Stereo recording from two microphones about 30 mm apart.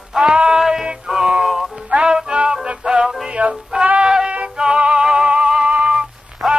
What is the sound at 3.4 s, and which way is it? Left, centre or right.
Music, right.